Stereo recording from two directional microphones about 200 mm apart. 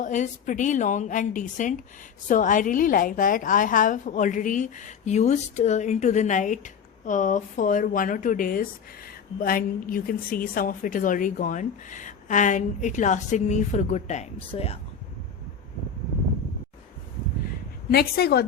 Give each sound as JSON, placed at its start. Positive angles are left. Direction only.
{"t": 0.0, "sound": "a woman's voice", "side_deg": 40}
{"t": 17.9, "sound": "a woman's voice", "side_deg": 50}